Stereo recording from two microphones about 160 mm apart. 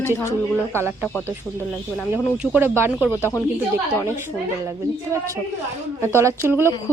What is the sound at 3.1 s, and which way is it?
Speech, 15° left (ahead or behind).